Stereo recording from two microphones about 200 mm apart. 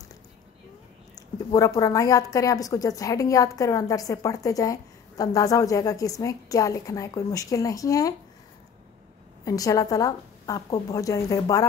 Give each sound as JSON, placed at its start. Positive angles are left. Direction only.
{"t": 1.5, "sound": "a woman's voice", "side_deg": 15}
{"t": 9.4, "sound": "a woman's voice", "side_deg": 15}